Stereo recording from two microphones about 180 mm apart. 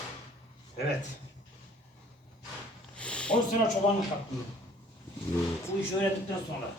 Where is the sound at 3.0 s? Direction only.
5° left (ahead or behind).